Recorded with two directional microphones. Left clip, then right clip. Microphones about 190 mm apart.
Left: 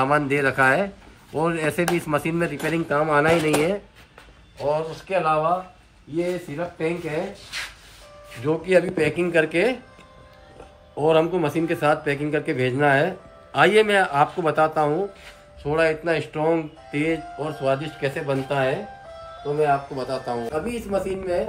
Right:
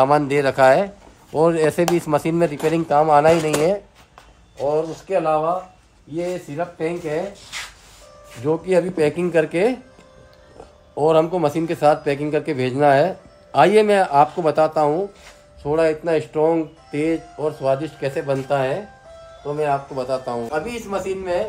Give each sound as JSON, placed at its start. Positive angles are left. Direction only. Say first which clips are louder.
{"t": 0.0, "sound": "speech", "louder": "right 4 dB", "side_deg": -55}
{"t": 8.5, "sound": "speech", "louder": "right 1 dB", "side_deg": -50}
{"t": 11.0, "sound": "a man's voice", "louder": "right 3 dB", "side_deg": -40}